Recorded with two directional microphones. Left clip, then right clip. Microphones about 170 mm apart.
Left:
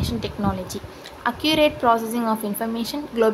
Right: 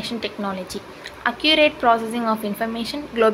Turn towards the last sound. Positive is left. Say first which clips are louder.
# right 2 dB
turn(degrees=15)  # may be behind; listen again after turning